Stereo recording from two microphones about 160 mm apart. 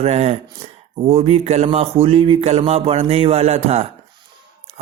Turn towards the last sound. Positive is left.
turn(degrees=-40)  # may be behind; listen again after turning